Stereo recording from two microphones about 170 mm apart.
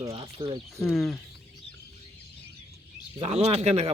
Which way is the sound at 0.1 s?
30° right (ahead or behind).